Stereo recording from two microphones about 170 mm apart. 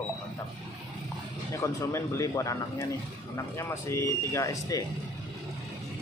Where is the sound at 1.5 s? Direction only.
15° left (ahead or behind).